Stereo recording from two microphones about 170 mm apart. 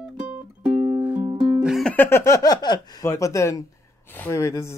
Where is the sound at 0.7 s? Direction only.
30° right (ahead or behind).